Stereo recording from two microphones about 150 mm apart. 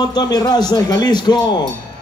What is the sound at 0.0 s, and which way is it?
Speech, 25° left (ahead or behind).